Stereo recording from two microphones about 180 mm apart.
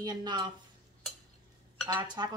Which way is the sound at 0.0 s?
25° right (ahead or behind).